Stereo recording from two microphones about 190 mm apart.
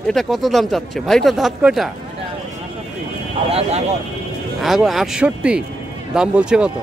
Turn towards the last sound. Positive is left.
turn(degrees=-5)  # may be behind; listen again after turning